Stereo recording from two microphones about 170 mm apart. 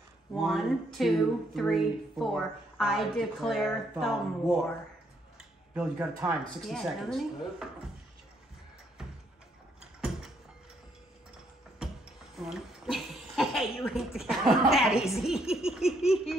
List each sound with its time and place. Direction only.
0.4 s speech: centre (ahead or behind)
5.8 s speech: 10° right (ahead or behind)
9.8 s mechanisms: 5° right (ahead or behind)
11.8 s a sound: 5° right (ahead or behind)
12.4 s speech: centre (ahead or behind)